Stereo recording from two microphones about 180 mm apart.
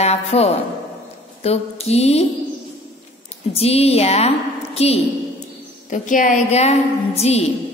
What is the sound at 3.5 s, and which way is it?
A woman's voice, 35° left (ahead or behind).